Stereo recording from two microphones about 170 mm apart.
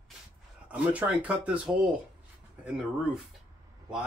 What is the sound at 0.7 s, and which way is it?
Speech, 10° right (ahead or behind).